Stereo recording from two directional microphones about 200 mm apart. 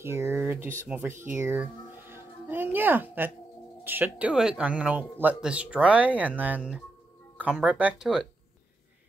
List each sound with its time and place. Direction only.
0.0 s speech: 10° right (ahead or behind)
1.3 s music: 10° right (ahead or behind)
3.8 s speech: 10° right (ahead or behind)